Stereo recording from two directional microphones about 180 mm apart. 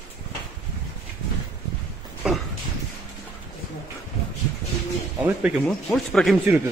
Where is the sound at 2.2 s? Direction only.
5° right (ahead or behind).